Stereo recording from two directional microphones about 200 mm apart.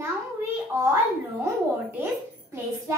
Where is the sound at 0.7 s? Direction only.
15° right (ahead or behind).